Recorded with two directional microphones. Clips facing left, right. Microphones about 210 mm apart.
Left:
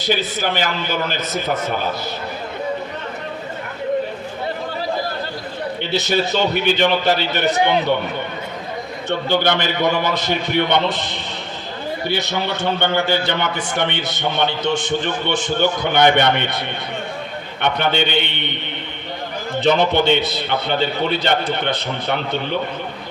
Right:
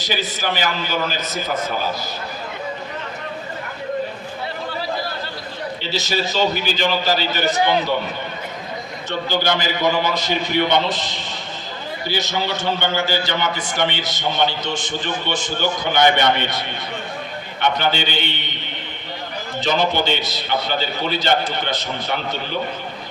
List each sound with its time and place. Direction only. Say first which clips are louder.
0.0 s a man's voice: left 4 dB; 60° left (ahead or behind)
5.8 s a man's voice: left 4 dB; 60° left (ahead or behind)
9.0 s a man's voice: left 3 dB; 60° left (ahead or behind)
17.6 s a man's voice: left 1 dB; 60° left (ahead or behind)
19.5 s a man's voice: left 4 dB; 60° left (ahead or behind)